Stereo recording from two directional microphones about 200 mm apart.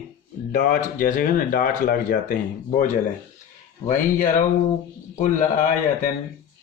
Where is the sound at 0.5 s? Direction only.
40° left (ahead or behind).